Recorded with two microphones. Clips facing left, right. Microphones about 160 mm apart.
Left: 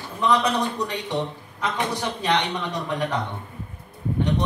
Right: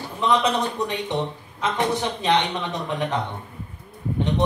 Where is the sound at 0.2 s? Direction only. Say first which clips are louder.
Even; 20° right (ahead or behind).